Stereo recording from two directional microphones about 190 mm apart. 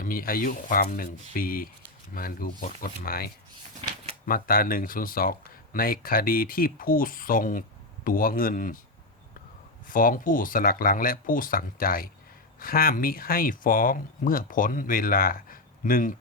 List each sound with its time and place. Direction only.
0.0 s speech: 50° left (ahead or behind)
4.3 s speech: 50° left (ahead or behind)
9.9 s speech: 45° left (ahead or behind)